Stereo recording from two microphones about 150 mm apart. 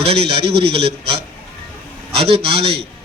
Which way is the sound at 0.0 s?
40° right (ahead or behind).